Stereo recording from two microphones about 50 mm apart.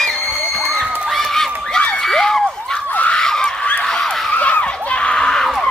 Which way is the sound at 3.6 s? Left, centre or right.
Left.